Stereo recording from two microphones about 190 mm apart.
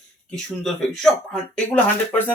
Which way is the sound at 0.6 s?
5° left (ahead or behind).